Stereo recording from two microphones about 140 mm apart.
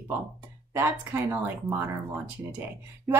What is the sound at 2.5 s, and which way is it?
Speech, 15° right (ahead or behind).